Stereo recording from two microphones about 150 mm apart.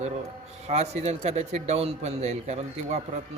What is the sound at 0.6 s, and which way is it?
A man's voice, 45° right (ahead or behind).